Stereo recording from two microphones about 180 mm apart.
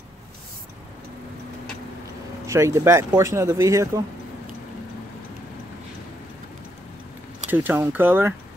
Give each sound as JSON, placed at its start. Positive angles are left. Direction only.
{"t": 2.4, "sound": "speech", "side_deg": -15}
{"t": 7.5, "sound": "speech", "side_deg": -10}